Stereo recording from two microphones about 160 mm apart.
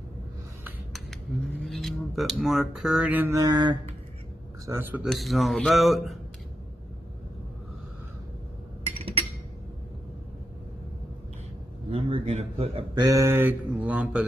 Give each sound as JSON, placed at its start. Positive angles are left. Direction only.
{"t": 1.6, "sound": "speech", "side_deg": 0}
{"t": 3.3, "sound": "mantra", "side_deg": -25}
{"t": 4.6, "sound": "mantra", "side_deg": -15}
{"t": 5.0, "sound": "speech", "side_deg": 0}
{"t": 8.9, "sound": "a sound", "side_deg": -35}
{"t": 11.9, "sound": "speech", "side_deg": -40}
{"t": 13.0, "sound": "mantra", "side_deg": -20}